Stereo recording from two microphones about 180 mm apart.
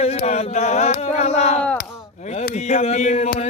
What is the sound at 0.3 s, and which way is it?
Chant, 40° left (ahead or behind).